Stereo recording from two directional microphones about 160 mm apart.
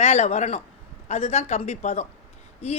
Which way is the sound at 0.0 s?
45° left (ahead or behind).